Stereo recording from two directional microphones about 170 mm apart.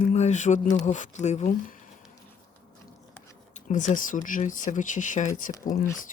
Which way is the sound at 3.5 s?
45° left (ahead or behind).